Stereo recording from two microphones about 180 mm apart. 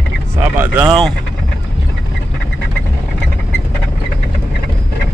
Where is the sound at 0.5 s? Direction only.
10° right (ahead or behind).